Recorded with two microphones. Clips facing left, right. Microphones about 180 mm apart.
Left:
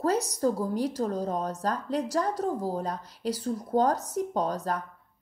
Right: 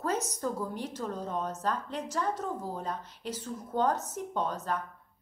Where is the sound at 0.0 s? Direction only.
35° left (ahead or behind).